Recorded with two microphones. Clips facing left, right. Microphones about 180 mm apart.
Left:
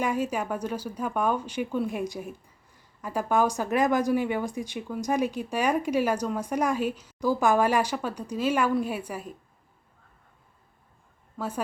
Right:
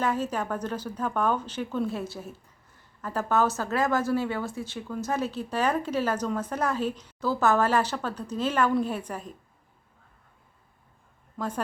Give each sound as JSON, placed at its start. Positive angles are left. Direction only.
{"t": 0.0, "sound": "speech", "side_deg": 10}
{"t": 11.3, "sound": "a woman's voice", "side_deg": 10}